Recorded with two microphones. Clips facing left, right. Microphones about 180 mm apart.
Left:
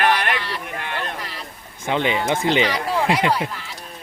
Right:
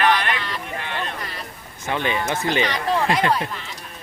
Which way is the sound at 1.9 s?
20° left (ahead or behind).